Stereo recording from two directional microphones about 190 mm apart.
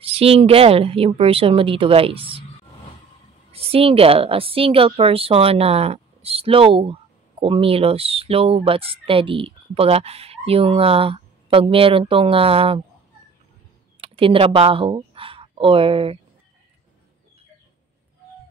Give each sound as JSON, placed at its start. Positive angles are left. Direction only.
{"t": 0.0, "sound": "speech", "side_deg": -30}
{"t": 3.5, "sound": "a woman's voice", "side_deg": -30}
{"t": 14.0, "sound": "speech", "side_deg": -30}